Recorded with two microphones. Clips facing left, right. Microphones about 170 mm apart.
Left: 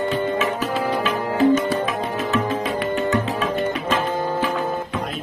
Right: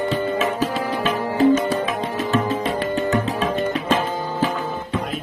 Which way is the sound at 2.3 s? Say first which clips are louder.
Right 2 dB; 35° right (ahead or behind).